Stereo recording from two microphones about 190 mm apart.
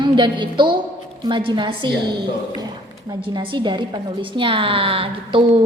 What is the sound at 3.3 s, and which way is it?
A woman's voice, 25° right (ahead or behind).